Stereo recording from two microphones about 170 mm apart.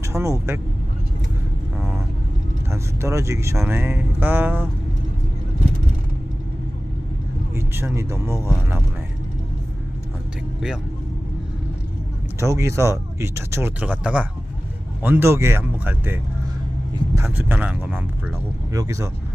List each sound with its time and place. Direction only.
0.0 s speech: 15° right (ahead or behind)
2.6 s speech: 15° right (ahead or behind)
7.5 s speech: 15° right (ahead or behind)
12.4 s speech: 15° right (ahead or behind)